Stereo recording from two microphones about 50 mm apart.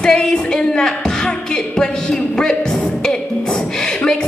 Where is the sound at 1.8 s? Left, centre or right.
Centre.